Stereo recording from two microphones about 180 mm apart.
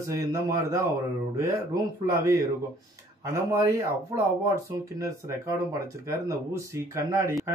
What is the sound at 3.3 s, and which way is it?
Speech, 15° right (ahead or behind).